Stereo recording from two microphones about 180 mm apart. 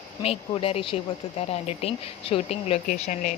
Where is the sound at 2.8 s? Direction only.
45° left (ahead or behind).